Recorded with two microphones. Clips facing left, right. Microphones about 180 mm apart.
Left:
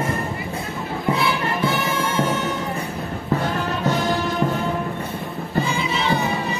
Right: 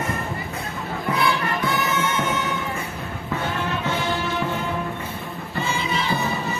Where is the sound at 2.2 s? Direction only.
35° left (ahead or behind).